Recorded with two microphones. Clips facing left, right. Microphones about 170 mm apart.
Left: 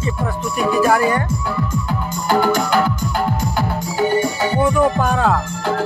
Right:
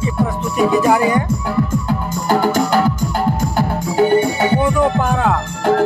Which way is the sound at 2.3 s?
45° right (ahead or behind).